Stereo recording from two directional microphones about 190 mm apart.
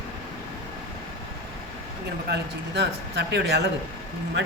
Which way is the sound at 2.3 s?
60° right (ahead or behind).